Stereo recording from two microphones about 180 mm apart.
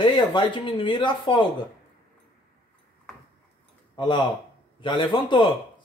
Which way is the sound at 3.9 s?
25° left (ahead or behind).